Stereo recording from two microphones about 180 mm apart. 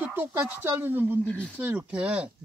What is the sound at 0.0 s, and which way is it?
Speech, 10° right (ahead or behind).